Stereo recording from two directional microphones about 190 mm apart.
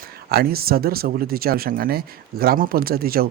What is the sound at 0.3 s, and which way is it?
Speech, 55° right (ahead or behind).